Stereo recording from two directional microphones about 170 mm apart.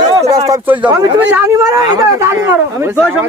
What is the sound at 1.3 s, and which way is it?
Speech, 10° right (ahead or behind).